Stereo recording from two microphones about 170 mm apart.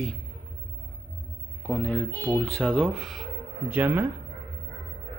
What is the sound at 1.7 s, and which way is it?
A man's voice, 5° left (ahead or behind).